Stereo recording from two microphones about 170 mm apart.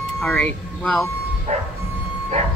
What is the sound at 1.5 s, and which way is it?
Bow-wow, 40° right (ahead or behind).